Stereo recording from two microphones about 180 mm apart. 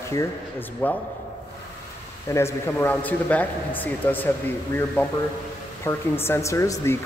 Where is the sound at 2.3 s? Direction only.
15° left (ahead or behind).